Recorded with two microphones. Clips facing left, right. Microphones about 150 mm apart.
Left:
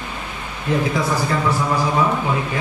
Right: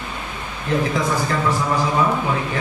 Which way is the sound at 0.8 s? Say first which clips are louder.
Left 1 dB; 10° left (ahead or behind).